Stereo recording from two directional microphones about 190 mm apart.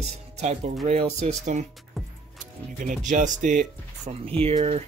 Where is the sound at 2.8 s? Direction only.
40° right (ahead or behind).